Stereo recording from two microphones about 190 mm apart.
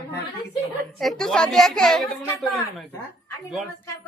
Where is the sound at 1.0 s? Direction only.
Centre (ahead or behind).